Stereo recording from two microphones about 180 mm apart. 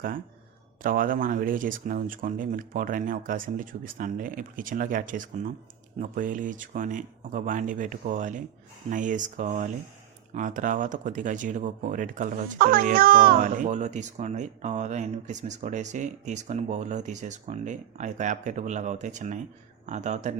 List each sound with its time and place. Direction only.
0.8 s speech: 50° right (ahead or behind)